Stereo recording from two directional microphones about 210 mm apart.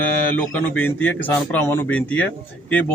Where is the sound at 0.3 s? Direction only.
10° left (ahead or behind).